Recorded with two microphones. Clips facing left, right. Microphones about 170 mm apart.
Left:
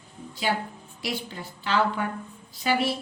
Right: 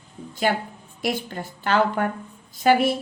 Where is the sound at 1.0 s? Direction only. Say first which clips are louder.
Right 6 dB; 50° right (ahead or behind).